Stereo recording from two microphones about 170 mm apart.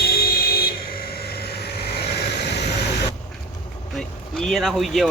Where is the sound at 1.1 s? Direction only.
65° left (ahead or behind); by 2.6 s 80° left.